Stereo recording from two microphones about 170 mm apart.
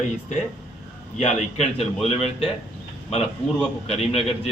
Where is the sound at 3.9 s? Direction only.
35° left (ahead or behind).